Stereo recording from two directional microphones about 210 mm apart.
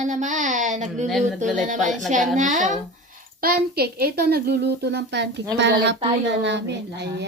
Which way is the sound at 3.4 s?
45° right (ahead or behind).